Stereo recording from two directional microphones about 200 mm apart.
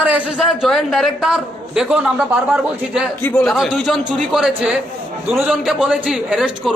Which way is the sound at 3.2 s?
5° left (ahead or behind).